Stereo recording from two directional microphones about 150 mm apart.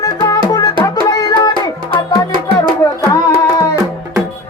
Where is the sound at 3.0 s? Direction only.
20° left (ahead or behind).